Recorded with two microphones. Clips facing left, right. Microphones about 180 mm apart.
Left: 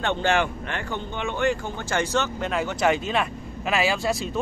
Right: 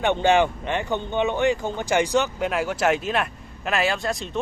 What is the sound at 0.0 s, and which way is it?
Speech, 15° right (ahead or behind).